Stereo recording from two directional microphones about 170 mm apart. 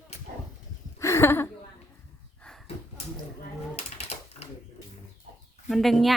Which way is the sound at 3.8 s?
40° left (ahead or behind).